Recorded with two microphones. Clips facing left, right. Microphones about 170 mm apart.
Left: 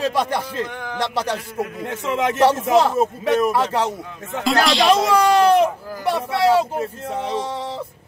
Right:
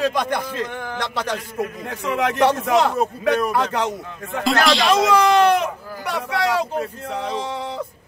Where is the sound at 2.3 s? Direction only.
5° left (ahead or behind).